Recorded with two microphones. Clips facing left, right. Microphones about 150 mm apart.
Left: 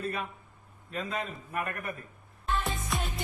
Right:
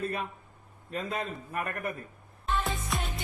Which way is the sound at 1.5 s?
35° right (ahead or behind).